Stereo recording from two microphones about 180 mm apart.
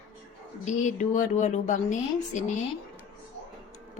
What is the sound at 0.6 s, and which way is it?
A woman's voice, 45° left (ahead or behind).